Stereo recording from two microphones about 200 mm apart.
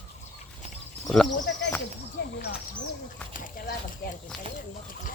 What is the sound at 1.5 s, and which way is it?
Speech, 60° left (ahead or behind).